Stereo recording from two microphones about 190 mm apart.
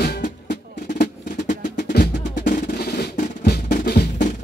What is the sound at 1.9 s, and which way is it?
Percussion, 50° left (ahead or behind).